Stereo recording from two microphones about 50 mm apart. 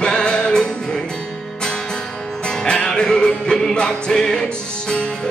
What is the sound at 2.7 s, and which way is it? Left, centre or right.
Music, centre.